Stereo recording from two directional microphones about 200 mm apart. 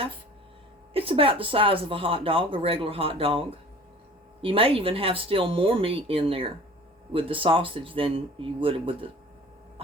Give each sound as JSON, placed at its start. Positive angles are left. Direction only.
{"t": 0.9, "sound": "speech", "side_deg": -25}